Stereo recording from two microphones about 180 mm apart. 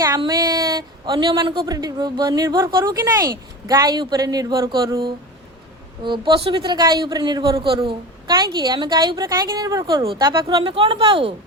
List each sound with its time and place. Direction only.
0.2 s a woman's voice: 25° right (ahead or behind)